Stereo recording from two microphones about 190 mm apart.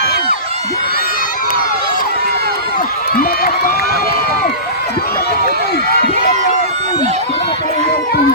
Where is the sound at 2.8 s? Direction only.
50° left (ahead or behind).